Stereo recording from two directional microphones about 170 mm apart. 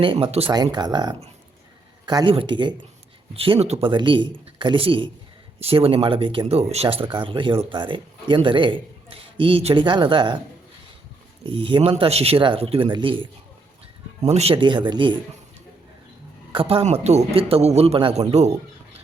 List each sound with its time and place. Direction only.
0.0 s a man's voice: 30° right (ahead or behind)
0.5 s speech: 25° right (ahead or behind)
11.4 s a man's voice: 30° right (ahead or behind)
16.5 s a man's voice: 30° right (ahead or behind)